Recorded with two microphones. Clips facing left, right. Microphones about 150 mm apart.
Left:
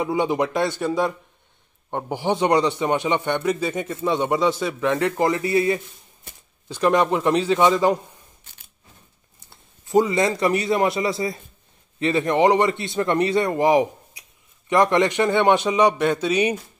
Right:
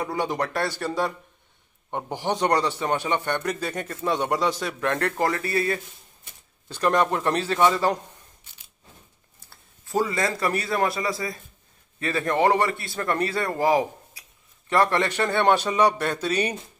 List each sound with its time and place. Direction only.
0.0 s a man's voice: 15° left (ahead or behind)
9.5 s a man's voice: 20° left (ahead or behind)